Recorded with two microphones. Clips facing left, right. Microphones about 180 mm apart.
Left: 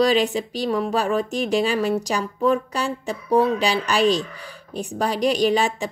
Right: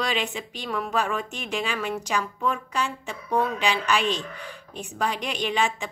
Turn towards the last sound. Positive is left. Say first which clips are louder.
# left 6 dB
turn(degrees=40)  # may be behind; listen again after turning